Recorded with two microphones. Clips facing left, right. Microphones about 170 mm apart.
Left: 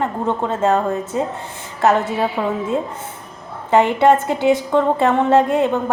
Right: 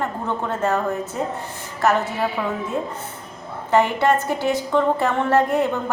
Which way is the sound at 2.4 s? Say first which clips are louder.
Left 4 dB; 25° left (ahead or behind).